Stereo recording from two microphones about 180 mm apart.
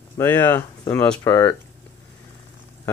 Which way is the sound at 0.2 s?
15° left (ahead or behind).